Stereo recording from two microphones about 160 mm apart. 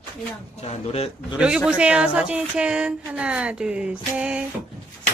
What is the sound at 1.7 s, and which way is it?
Speech, 5° right (ahead or behind).